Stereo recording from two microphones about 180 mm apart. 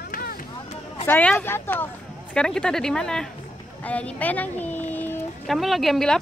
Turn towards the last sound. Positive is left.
turn(degrees=0)  # may be behind; listen again after turning